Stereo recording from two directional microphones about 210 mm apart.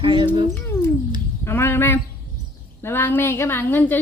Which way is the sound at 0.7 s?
10° left (ahead or behind).